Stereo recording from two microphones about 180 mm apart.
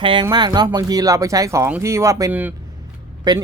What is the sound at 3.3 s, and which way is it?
Speech, 25° right (ahead or behind).